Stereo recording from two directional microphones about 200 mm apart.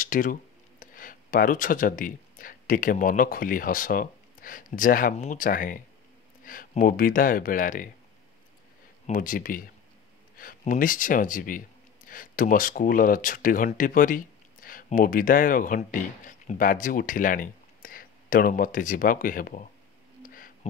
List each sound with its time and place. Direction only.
0.0 s speech: 40° left (ahead or behind)
9.0 s speech: 40° left (ahead or behind)
20.2 s a sound: 45° left (ahead or behind)